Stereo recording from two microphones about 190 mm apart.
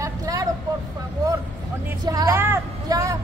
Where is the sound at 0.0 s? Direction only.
20° right (ahead or behind).